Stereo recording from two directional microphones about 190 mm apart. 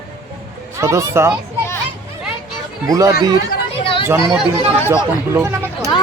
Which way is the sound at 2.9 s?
15° right (ahead or behind).